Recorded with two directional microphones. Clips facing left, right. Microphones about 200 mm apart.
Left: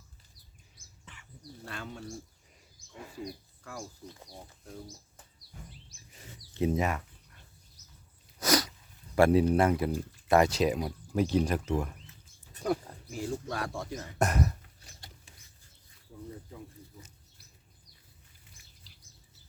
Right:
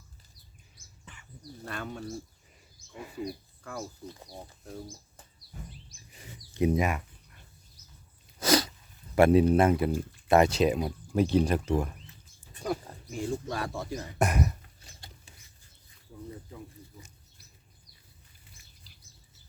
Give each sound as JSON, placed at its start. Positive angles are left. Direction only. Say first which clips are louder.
{"t": 1.6, "sound": "speech", "louder": "right 4 dB", "side_deg": -55}
{"t": 2.7, "sound": "wild animals", "louder": "right 4 dB", "side_deg": -5}
{"t": 3.6, "sound": "speech", "louder": "right 4 dB", "side_deg": -55}
{"t": 6.1, "sound": "a sound", "louder": "right 3 dB", "side_deg": -10}
{"t": 8.4, "sound": "sneeze", "louder": "right 3 dB", "side_deg": -30}
{"t": 9.1, "sound": "speech", "louder": "right 2 dB", "side_deg": -20}
{"t": 13.1, "sound": "speech", "louder": "right 2 dB", "side_deg": 0}